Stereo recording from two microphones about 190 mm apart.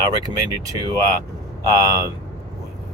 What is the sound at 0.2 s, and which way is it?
Speech, 20° right (ahead or behind).